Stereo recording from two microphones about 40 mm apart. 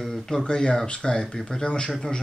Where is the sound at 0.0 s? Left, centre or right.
Centre.